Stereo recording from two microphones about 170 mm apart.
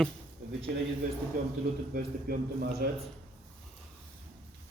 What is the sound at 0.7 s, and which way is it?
Speech, 70° right (ahead or behind).